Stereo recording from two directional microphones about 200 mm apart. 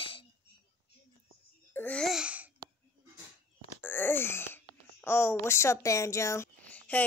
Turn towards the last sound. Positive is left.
turn(degrees=5)  # may be behind; listen again after turning